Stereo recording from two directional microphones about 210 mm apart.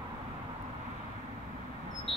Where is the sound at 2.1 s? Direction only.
Centre (ahead or behind).